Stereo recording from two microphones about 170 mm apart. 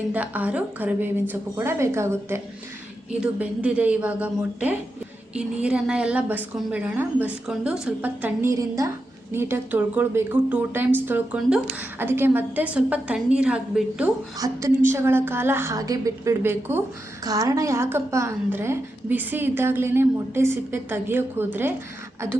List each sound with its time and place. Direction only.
0.1 s a woman's voice: 10° right (ahead or behind)
14.3 s a woman's voice: 20° right (ahead or behind)